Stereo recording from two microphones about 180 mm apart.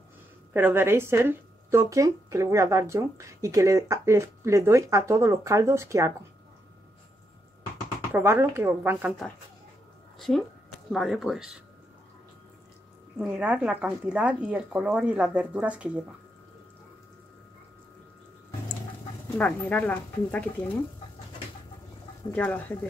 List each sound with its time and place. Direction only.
0.5 s speech: 10° right (ahead or behind)
8.1 s speech: 10° right (ahead or behind)
10.1 s a sound: centre (ahead or behind)
10.9 s speech: centre (ahead or behind)
13.2 s speech: 5° right (ahead or behind)
19.3 s speech: 10° left (ahead or behind)
22.3 s speech: 10° left (ahead or behind)